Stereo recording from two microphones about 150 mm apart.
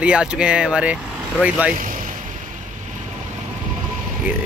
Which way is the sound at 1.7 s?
65° right (ahead or behind).